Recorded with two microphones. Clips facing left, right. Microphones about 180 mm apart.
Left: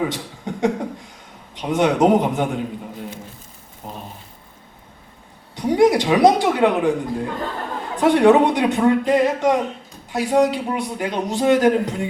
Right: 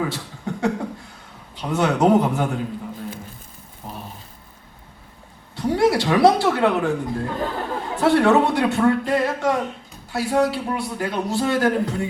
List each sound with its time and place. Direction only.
0.1 s a sound: 15° left (ahead or behind)
1.5 s a man's voice: 20° left (ahead or behind)
5.5 s a man's voice: 15° left (ahead or behind)